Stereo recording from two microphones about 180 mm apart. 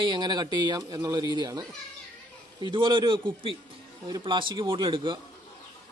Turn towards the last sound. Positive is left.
turn(degrees=-25)  # may be behind; listen again after turning